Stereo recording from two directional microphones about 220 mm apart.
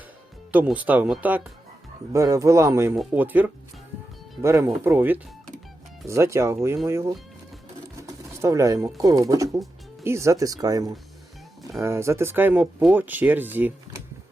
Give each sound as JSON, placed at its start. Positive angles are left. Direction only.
{"t": 0.5, "sound": "speech", "side_deg": -5}